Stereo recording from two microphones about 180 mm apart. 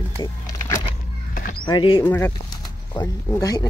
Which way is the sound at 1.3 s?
50° left (ahead or behind).